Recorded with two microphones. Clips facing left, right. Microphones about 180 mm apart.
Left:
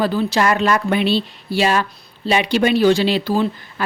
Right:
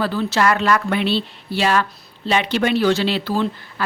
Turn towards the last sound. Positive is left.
turn(degrees=15)  # may be behind; listen again after turning